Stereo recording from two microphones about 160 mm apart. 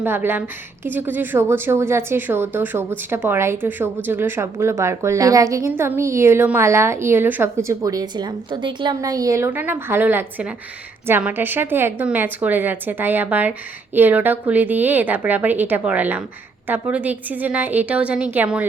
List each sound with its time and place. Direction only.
0.0 s a woman's voice: 15° right (ahead or behind)